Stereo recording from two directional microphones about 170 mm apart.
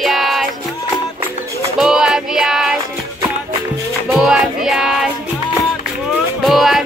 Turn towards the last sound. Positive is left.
turn(degrees=0)  # may be behind; listen again after turning